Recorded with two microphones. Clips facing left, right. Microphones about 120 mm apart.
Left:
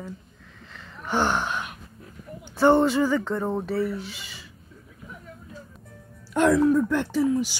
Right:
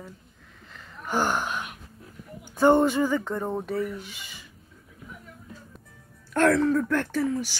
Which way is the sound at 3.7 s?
35° left (ahead or behind).